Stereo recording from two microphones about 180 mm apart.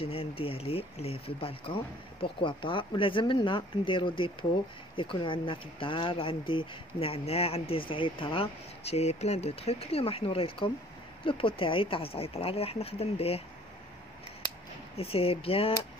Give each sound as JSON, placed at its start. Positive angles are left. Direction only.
{"t": 0.0, "sound": "speech", "side_deg": 30}
{"t": 15.0, "sound": "speech", "side_deg": 30}